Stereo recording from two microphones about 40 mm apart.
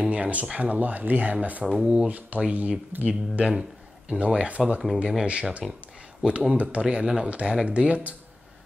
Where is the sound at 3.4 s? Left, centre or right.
Right.